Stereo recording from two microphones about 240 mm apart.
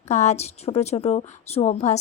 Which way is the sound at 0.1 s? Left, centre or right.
Left.